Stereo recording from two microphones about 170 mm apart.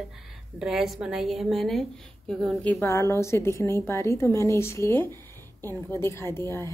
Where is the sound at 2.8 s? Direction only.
15° left (ahead or behind).